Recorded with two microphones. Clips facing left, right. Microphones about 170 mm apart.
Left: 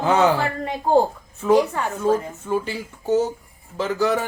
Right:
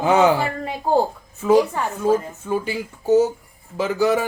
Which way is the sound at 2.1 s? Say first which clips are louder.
Right 1 dB; 10° right (ahead or behind).